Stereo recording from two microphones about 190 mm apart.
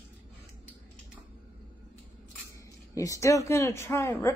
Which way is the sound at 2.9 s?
15° left (ahead or behind).